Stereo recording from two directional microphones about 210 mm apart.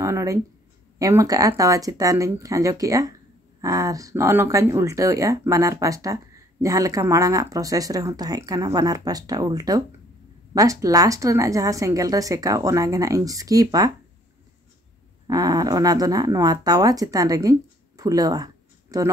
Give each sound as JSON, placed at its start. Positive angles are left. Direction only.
{"t": 0.0, "sound": "speech", "side_deg": -15}
{"t": 15.2, "sound": "speech", "side_deg": -15}